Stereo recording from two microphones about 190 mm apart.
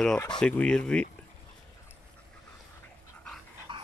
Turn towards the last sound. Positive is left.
turn(degrees=-25)  # may be behind; listen again after turning